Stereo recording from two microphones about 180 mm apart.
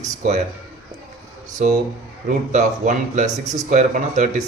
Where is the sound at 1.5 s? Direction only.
40° right (ahead or behind).